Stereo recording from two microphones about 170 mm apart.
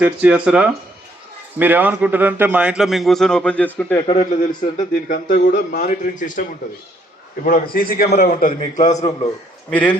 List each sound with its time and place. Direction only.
0.0 s a man's voice: 10° right (ahead or behind); by 4.0 s 10° left (ahead or behind)
4.0 s a man's voice: 35° left (ahead or behind)
4.8 s speech: 50° left (ahead or behind)
7.4 s a man's voice: 60° left (ahead or behind)
8.8 s a man's voice: 20° left (ahead or behind)
9.6 s speech: 10° left (ahead or behind)